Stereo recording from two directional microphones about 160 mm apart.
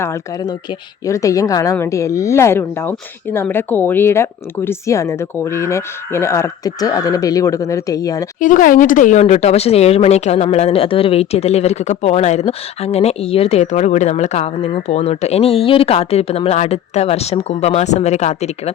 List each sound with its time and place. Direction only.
0.0 s a woman's voice: 15° left (ahead or behind)
8.4 s speech: 55° left (ahead or behind)